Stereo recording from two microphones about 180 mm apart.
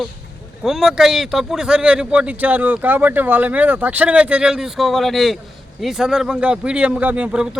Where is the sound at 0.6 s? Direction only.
Centre (ahead or behind).